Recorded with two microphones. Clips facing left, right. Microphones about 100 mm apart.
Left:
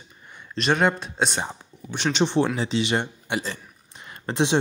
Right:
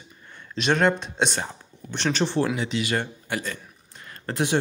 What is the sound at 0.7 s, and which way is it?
Speech, 5° left (ahead or behind).